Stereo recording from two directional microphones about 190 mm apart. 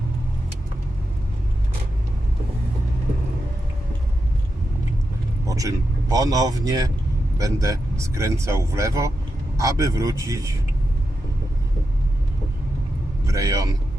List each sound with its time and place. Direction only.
5.5 s speech: 20° right (ahead or behind)
13.3 s speech: 15° right (ahead or behind)